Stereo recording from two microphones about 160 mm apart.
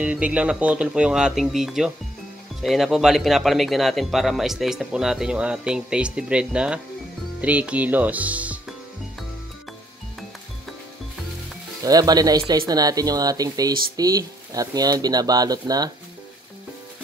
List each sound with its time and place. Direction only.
0.0 s a man's voice: 10° right (ahead or behind)
11.8 s speech: 25° right (ahead or behind)